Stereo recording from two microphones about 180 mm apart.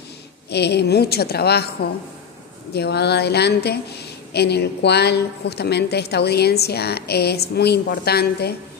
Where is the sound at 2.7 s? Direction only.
65° left (ahead or behind).